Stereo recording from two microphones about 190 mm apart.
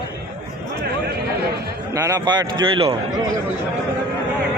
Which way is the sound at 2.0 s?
20° right (ahead or behind).